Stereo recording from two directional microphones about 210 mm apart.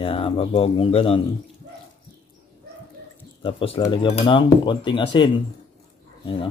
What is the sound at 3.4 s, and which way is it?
Speech, 25° left (ahead or behind).